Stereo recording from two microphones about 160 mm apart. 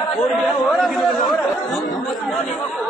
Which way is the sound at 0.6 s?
Centre (ahead or behind).